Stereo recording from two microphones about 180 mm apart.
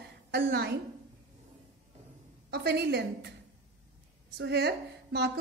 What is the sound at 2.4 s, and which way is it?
Speech, 65° right (ahead or behind).